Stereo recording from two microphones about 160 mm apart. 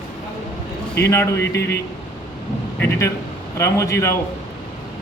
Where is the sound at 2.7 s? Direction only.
15° left (ahead or behind).